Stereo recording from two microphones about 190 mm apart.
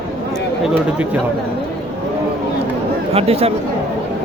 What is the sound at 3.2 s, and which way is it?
Speech, 30° right (ahead or behind).